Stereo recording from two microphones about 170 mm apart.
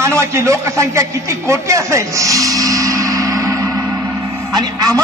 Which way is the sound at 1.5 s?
15° right (ahead or behind).